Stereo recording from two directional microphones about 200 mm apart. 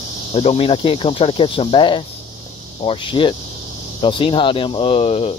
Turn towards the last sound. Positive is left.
turn(degrees=30)  # may be behind; listen again after turning